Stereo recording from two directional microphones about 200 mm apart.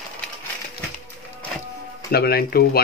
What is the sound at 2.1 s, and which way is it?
Speech, 50° left (ahead or behind).